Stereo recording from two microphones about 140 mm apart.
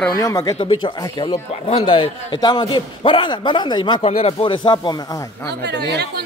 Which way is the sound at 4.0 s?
45° left (ahead or behind).